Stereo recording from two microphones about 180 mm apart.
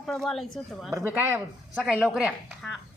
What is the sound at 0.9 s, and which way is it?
Speech, 10° right (ahead or behind).